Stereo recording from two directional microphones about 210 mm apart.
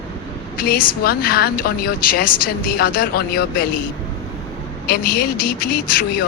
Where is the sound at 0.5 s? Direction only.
45° left (ahead or behind).